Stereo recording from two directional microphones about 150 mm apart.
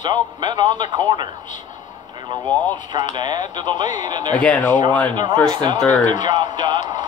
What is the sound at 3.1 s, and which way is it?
Speech, 30° right (ahead or behind).